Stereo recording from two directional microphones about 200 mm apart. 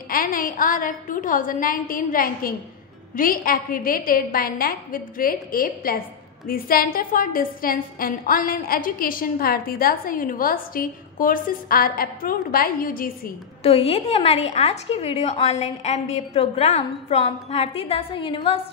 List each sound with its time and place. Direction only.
0.1 s a woman's voice: 45° left (ahead or behind)
13.6 s a woman's voice: 30° left (ahead or behind)